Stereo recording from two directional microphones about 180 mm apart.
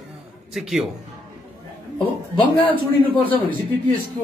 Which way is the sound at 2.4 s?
30° left (ahead or behind).